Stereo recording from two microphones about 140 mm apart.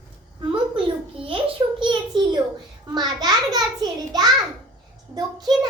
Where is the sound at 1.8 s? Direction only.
35° right (ahead or behind).